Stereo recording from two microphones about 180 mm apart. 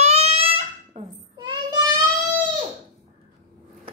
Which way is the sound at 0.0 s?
35° right (ahead or behind).